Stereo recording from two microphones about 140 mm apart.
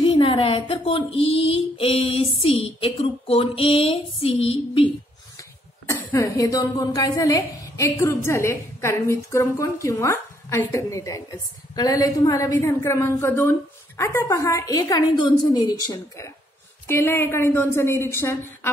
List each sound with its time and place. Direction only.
0.0 s speech: 40° left (ahead or behind)
5.9 s a woman's voice: 25° left (ahead or behind)
16.8 s a woman's voice: 15° left (ahead or behind)